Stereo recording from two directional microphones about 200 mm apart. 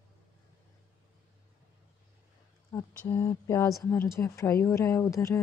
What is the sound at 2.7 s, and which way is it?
Speech, 15° left (ahead or behind).